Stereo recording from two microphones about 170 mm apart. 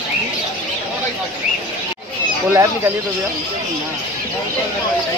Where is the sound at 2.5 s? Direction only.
20° right (ahead or behind).